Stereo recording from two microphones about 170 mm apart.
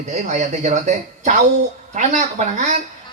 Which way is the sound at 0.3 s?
45° right (ahead or behind).